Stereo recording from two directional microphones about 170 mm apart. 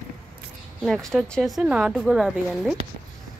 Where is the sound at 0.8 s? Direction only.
Centre (ahead or behind).